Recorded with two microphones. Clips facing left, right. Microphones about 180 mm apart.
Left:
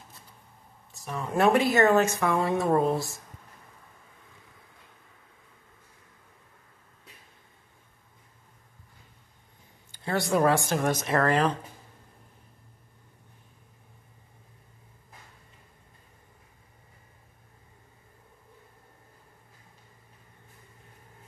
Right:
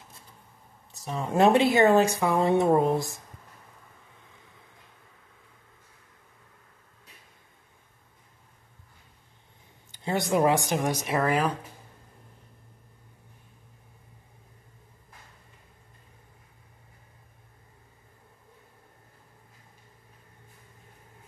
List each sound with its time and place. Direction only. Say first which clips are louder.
0.9 s speech: right 3 dB; 25° right (ahead or behind)
9.8 s speech: even; 20° right (ahead or behind)